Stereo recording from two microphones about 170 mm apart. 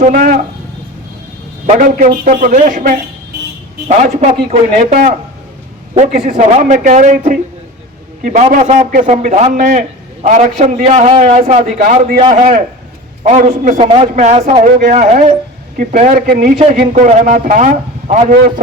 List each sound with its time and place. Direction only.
0.1 s a man's voice: 55° right (ahead or behind)
1.6 s a man's voice: 50° right (ahead or behind)
6.1 s a man's voice: 45° right (ahead or behind)
10.8 s a man's voice: 35° right (ahead or behind)
11.8 s a man's voice: 55° right (ahead or behind)